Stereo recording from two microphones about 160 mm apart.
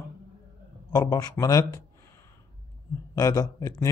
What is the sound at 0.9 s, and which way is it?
Speech, 25° left (ahead or behind).